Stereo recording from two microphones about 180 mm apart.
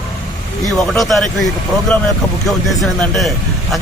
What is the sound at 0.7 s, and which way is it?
Speech, centre (ahead or behind).